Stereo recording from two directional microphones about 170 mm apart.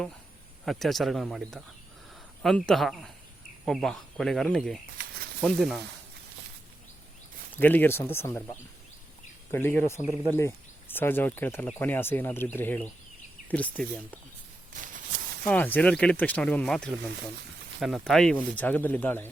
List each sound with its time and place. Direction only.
0.6 s speech: centre (ahead or behind)
7.6 s speech: 10° left (ahead or behind)
9.5 s speech: 15° left (ahead or behind)
14.8 s a sound: 50° right (ahead or behind)
15.4 s speech: 10° left (ahead or behind)